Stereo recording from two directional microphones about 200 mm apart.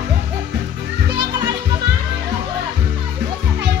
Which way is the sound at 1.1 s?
25° right (ahead or behind).